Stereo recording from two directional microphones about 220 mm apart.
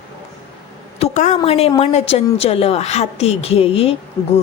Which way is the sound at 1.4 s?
25° left (ahead or behind).